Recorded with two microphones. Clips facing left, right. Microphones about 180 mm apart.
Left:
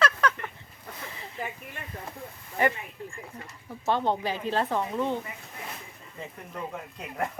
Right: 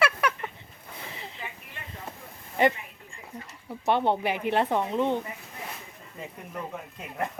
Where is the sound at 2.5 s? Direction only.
20° right (ahead or behind).